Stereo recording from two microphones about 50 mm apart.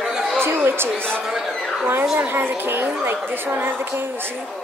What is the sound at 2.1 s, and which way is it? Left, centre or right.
A woman's voice, right.